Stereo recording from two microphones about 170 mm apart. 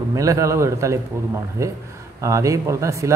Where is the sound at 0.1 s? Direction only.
20° right (ahead or behind).